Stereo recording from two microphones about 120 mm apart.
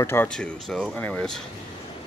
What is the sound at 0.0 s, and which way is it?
Speech, 20° left (ahead or behind).